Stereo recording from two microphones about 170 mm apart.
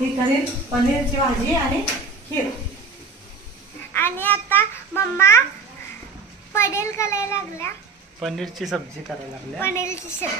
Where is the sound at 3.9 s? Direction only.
10° left (ahead or behind).